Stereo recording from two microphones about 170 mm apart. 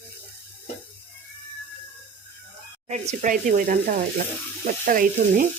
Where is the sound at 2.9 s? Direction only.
45° right (ahead or behind).